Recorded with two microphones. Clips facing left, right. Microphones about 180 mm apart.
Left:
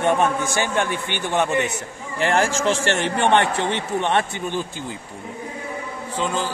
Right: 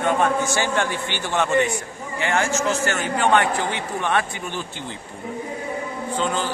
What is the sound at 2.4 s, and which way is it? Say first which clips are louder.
A man's voice: left 2 dB; 30° left (ahead or behind).